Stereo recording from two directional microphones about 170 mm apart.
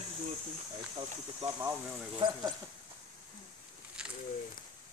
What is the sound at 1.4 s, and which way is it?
Speech, 15° right (ahead or behind).